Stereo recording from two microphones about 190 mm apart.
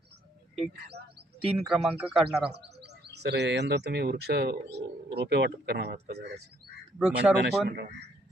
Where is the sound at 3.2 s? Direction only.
65° right (ahead or behind).